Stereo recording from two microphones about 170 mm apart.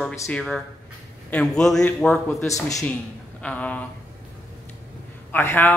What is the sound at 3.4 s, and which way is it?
Speech, 10° left (ahead or behind).